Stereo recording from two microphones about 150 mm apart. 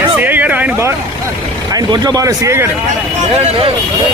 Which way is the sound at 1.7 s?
25° right (ahead or behind).